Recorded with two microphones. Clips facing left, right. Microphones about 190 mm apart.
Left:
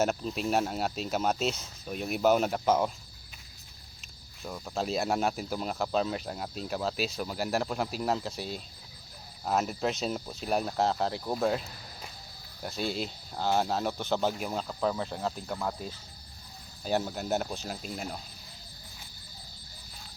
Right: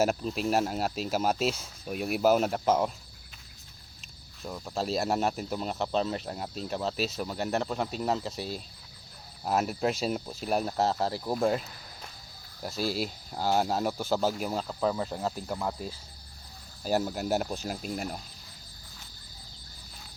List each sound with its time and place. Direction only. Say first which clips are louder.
0.0 s speech: right 2 dB; 5° right (ahead or behind)
4.4 s speech: right 1 dB; centre (ahead or behind)
12.6 s speech: right 2 dB; centre (ahead or behind)